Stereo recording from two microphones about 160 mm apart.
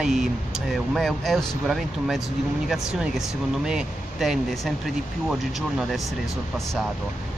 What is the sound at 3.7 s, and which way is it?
Speech, 5° right (ahead or behind).